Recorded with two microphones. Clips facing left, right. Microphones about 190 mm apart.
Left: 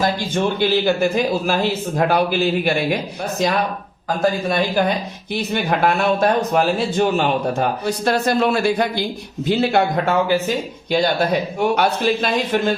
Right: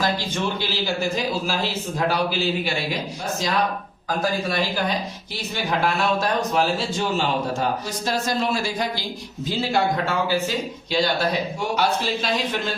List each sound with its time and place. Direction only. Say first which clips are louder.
0.0 s a man's voice: left 5 dB; 55° left (ahead or behind)
4.4 s a man's voice: left 6 dB; 50° left (ahead or behind)